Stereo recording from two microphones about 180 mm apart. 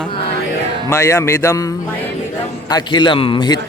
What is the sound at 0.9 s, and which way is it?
A man's voice, 15° left (ahead or behind).